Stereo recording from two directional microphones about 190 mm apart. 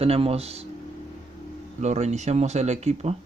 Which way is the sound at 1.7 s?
35° right (ahead or behind).